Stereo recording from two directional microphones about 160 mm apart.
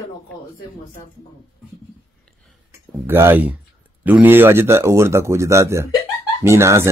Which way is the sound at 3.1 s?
15° right (ahead or behind).